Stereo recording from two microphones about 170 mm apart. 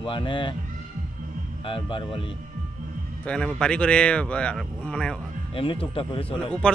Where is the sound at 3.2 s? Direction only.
5° left (ahead or behind).